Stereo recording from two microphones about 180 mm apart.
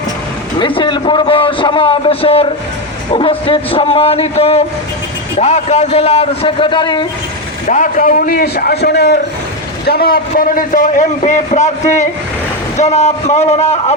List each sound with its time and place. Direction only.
0.6 s a man's voice: 25° left (ahead or behind)
7.7 s a man's voice: 45° left (ahead or behind)
12.7 s a man's voice: 40° left (ahead or behind)